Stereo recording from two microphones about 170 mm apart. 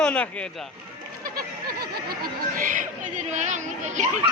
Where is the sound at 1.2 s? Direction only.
65° right (ahead or behind).